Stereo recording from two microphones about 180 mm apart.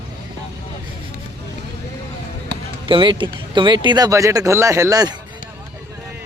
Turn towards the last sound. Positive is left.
turn(degrees=-20)  # may be behind; listen again after turning